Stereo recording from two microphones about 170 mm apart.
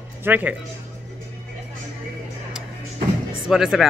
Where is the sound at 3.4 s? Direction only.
Centre (ahead or behind).